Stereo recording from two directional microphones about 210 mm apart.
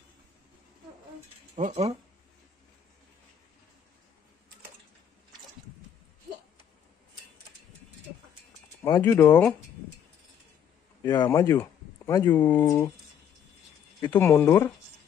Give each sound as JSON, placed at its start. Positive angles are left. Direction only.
{"t": 1.5, "sound": "speech", "side_deg": -30}
{"t": 8.8, "sound": "speech", "side_deg": 15}
{"t": 11.2, "sound": "speech", "side_deg": 10}
{"t": 14.0, "sound": "speech", "side_deg": 10}